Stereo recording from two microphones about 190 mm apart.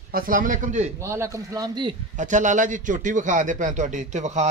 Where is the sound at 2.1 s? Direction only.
40° right (ahead or behind).